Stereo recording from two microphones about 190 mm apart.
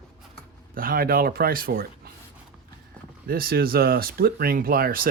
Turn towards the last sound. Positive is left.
turn(degrees=-50)  # may be behind; listen again after turning